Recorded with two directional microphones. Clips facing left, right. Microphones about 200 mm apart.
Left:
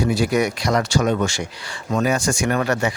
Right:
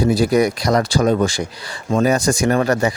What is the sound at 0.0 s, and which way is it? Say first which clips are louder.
Speech: right 4 dB; 35° right (ahead or behind).